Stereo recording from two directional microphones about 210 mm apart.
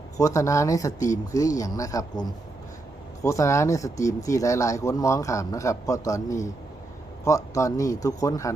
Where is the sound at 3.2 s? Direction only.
15° left (ahead or behind).